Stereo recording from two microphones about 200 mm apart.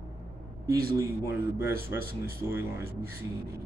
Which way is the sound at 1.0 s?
15° right (ahead or behind).